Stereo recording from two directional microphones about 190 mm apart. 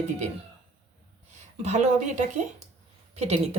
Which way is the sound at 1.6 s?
35° right (ahead or behind).